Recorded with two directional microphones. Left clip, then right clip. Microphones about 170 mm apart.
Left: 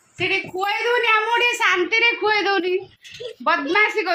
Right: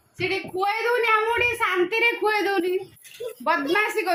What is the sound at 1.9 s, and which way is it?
A woman's voice, 10° left (ahead or behind).